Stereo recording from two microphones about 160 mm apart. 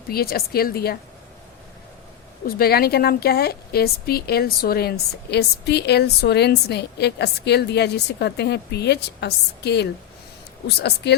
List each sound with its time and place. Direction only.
0.1 s a woman's voice: 70° left (ahead or behind)
2.6 s a woman's voice: 75° left (ahead or behind); by 11.1 s 90° left